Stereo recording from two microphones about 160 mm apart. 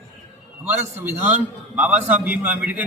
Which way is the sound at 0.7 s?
10° right (ahead or behind).